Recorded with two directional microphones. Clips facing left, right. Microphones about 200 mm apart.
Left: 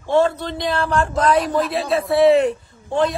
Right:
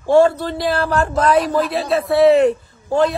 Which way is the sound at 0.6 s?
5° right (ahead or behind).